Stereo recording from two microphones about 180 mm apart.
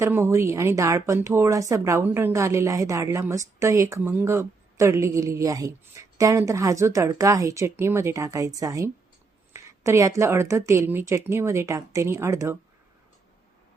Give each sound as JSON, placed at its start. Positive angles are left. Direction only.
{"t": 0.0, "sound": "a woman's voice", "side_deg": -15}